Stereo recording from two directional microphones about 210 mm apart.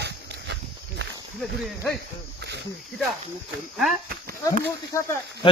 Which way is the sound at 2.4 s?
55° right (ahead or behind).